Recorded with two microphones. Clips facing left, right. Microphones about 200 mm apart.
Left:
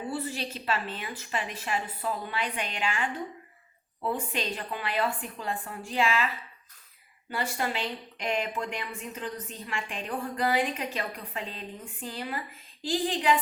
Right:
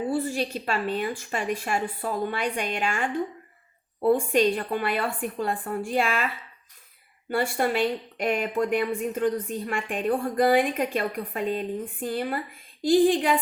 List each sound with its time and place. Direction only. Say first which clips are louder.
0.1 s speech: right 7 dB; 45° right (ahead or behind)
7.3 s speech: right 7 dB; 50° right (ahead or behind)